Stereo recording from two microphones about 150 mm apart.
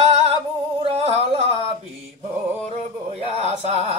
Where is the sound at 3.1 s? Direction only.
45° right (ahead or behind).